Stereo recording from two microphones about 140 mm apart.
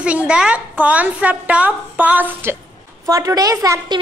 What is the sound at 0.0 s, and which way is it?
A woman's voice, 10° right (ahead or behind).